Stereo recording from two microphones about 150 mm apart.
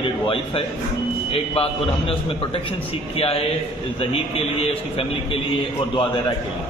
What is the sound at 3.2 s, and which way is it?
A man's voice, 40° left (ahead or behind).